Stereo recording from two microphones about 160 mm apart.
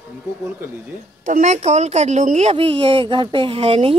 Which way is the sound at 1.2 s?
50° right (ahead or behind).